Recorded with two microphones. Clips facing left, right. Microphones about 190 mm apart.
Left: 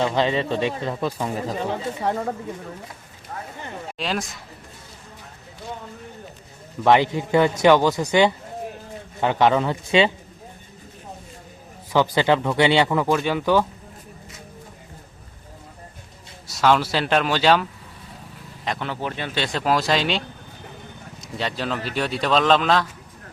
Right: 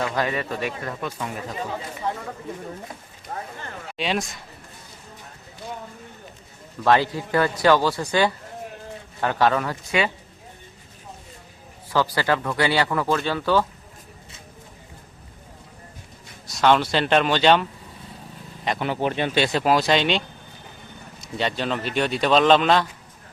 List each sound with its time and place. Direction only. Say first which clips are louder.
0.0 s speech: left 4 dB; 25° left (ahead or behind)
2.0 s speech: left 4 dB; 65° left (ahead or behind)
3.9 s speech: right 2 dB; centre (ahead or behind)
6.8 s speech: left 2 dB; 20° left (ahead or behind)
9.2 s speech: left 3 dB; 20° left (ahead or behind)
11.9 s speech: left 3 dB; 20° left (ahead or behind)
16.6 s speech: even; 5° left (ahead or behind)
18.9 s speech: right 5 dB; 20° right (ahead or behind); by 22.9 s centre (ahead or behind)